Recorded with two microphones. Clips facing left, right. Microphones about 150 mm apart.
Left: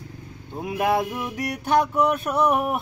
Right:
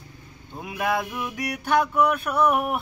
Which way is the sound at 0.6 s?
35° left (ahead or behind).